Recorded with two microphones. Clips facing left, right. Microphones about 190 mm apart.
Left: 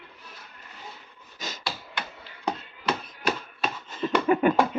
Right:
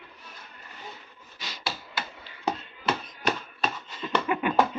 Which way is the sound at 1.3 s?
45° left (ahead or behind).